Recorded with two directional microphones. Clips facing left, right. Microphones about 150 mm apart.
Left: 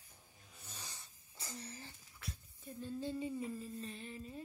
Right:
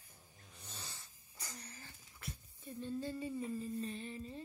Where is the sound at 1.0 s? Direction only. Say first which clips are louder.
Even; 25° left (ahead or behind).